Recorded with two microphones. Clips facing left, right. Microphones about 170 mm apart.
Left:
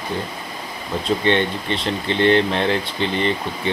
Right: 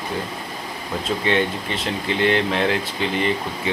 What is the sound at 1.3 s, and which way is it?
Speech, 5° right (ahead or behind).